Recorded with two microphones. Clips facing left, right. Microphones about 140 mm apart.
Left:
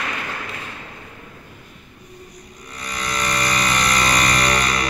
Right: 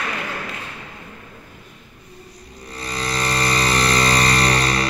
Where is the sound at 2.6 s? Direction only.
30° right (ahead or behind).